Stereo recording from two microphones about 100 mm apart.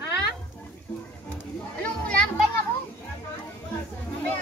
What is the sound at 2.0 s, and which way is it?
Children playing, 10° left (ahead or behind).